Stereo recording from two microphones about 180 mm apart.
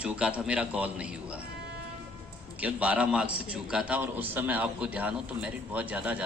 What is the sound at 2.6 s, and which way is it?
A man's voice, 5° right (ahead or behind).